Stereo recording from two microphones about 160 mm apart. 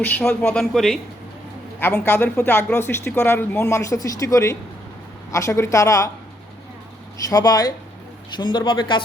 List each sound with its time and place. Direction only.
0.0 s a man's voice: 10° left (ahead or behind)
1.8 s a woman's voice: 10° left (ahead or behind)
7.3 s a woman's voice: 20° left (ahead or behind)